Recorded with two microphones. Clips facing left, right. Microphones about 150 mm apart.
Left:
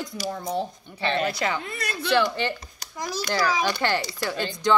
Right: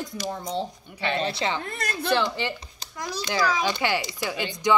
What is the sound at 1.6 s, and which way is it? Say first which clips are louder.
Speech: right 1 dB; 45° right (ahead or behind).